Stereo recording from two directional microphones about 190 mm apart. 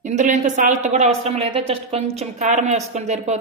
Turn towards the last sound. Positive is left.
turn(degrees=-35)  # may be behind; listen again after turning